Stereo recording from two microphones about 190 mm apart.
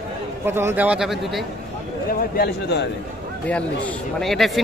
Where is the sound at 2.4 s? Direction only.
60° left (ahead or behind).